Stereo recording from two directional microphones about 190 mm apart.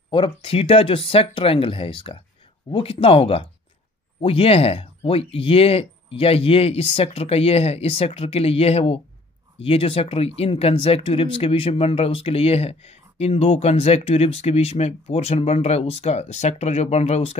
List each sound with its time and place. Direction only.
0.1 s speech: 25° left (ahead or behind)